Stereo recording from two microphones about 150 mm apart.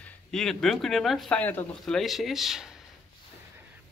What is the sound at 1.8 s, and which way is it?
Speech, centre (ahead or behind).